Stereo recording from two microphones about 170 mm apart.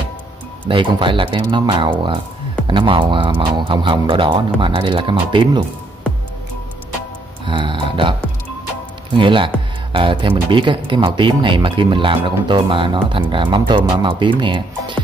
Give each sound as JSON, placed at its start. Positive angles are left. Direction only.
{"t": 0.7, "sound": "speech", "side_deg": -30}
{"t": 7.4, "sound": "speech", "side_deg": -30}